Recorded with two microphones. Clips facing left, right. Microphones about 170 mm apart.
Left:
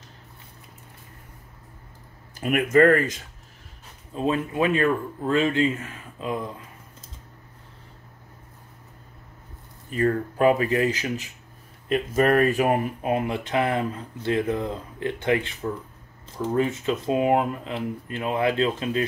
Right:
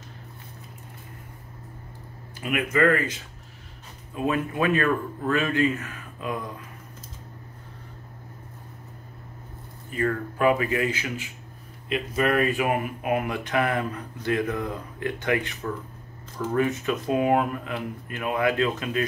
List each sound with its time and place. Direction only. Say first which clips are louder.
2.4 s speech: left 5 dB; 45° left (ahead or behind)
4.1 s speech: left 1 dB; 25° left (ahead or behind)
9.9 s speech: left 3 dB; 35° left (ahead or behind)